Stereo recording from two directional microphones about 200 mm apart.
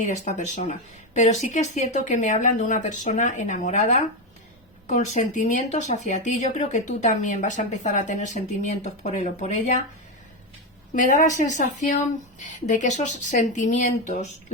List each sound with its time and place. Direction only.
0.0 s speech: 35° left (ahead or behind)
10.9 s speech: 40° left (ahead or behind)